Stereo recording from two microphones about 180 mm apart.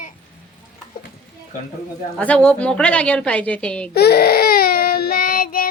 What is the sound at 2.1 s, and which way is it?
A woman's voice, 5° left (ahead or behind).